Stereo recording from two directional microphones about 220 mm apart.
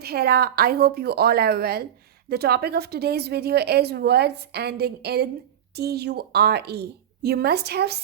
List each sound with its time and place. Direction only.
0.0 s a woman's voice: 45° right (ahead or behind)